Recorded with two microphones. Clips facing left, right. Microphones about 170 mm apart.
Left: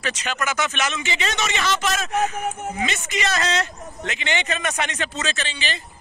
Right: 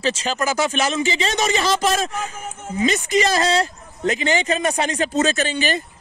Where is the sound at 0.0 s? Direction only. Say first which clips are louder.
Right 5 dB; 30° right (ahead or behind); by 5.9 s 45° right (ahead or behind).